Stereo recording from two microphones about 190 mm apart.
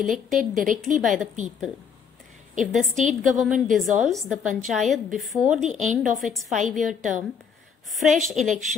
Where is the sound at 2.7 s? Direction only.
Centre (ahead or behind).